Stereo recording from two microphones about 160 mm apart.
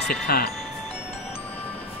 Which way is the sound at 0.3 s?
70° left (ahead or behind).